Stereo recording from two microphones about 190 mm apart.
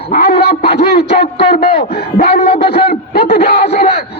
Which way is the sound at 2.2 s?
35° left (ahead or behind).